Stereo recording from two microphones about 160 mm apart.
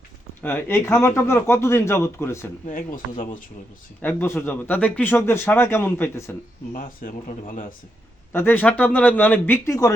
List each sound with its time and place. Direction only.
0.4 s speech: 15° left (ahead or behind)
2.6 s speech: 55° left (ahead or behind)
4.0 s speech: 15° left (ahead or behind)
6.7 s speech: 60° left (ahead or behind)
8.3 s speech: 15° left (ahead or behind)